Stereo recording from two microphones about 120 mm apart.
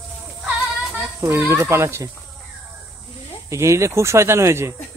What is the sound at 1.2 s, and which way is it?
Speech, 20° right (ahead or behind).